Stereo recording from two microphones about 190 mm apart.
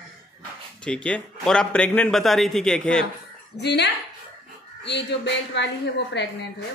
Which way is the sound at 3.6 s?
65° left (ahead or behind).